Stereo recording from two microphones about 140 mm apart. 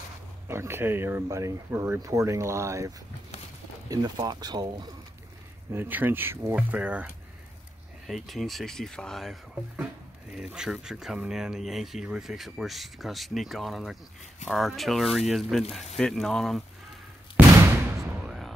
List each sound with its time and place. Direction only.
0.5 s speech: 15° right (ahead or behind)
3.9 s speech: 30° right (ahead or behind)
5.7 s speech: 15° right (ahead or behind)
8.1 s speech: centre (ahead or behind)
17.4 s a sound: 10° right (ahead or behind)
18.2 s music: centre (ahead or behind)